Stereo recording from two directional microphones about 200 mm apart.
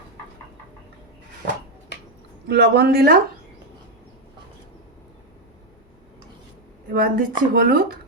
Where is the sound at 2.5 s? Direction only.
55° right (ahead or behind).